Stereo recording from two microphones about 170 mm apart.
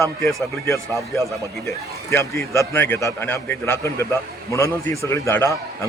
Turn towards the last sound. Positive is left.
turn(degrees=15)  # may be behind; listen again after turning